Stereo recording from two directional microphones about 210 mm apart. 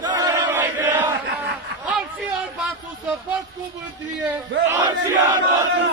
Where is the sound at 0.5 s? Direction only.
10° right (ahead or behind).